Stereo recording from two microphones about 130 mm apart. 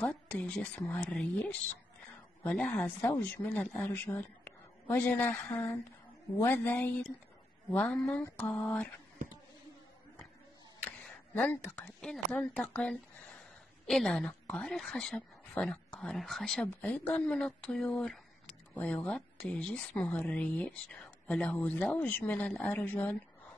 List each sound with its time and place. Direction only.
0.0 s speech: 10° left (ahead or behind)
2.4 s a woman's voice: 10° left (ahead or behind)
10.8 s a woman's voice: 15° left (ahead or behind)
16.6 s speech: 15° left (ahead or behind)